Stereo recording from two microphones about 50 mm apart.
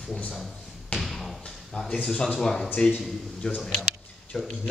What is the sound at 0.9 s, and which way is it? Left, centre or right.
Thump, centre.